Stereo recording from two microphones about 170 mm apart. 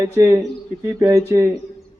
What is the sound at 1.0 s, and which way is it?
Speech, 15° right (ahead or behind).